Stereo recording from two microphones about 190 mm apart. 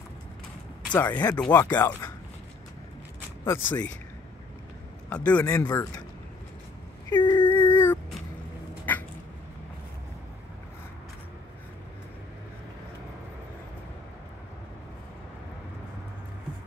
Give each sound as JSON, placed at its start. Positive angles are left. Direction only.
{"t": 0.9, "sound": "speech", "side_deg": 10}
{"t": 3.4, "sound": "speech", "side_deg": 10}
{"t": 5.1, "sound": "speech", "side_deg": 10}
{"t": 5.5, "sound": "speech", "side_deg": 20}
{"t": 7.1, "sound": "a sound", "side_deg": 25}
{"t": 7.4, "sound": "dog", "side_deg": 10}
{"t": 8.9, "sound": "cat", "side_deg": 10}